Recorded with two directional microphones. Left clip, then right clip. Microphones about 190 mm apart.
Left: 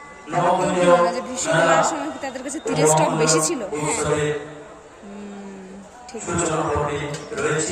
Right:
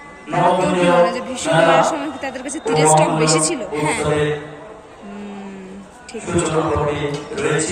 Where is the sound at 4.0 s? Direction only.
65° left (ahead or behind).